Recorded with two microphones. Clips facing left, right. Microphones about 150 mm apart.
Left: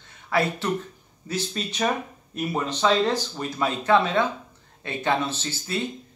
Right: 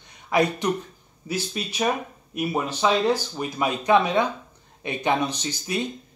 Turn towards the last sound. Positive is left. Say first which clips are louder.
# right 1 dB
turn(degrees=-15)  # may be behind; listen again after turning